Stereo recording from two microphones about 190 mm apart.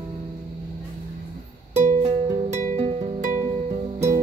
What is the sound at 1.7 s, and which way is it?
Music, 35° right (ahead or behind).